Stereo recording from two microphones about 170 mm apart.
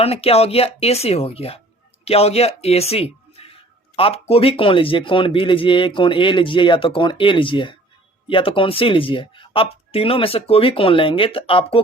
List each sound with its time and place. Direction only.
0.0 s speech: 35° left (ahead or behind)